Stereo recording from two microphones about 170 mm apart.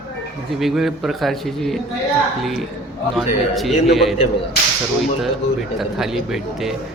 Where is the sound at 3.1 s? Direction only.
Centre (ahead or behind).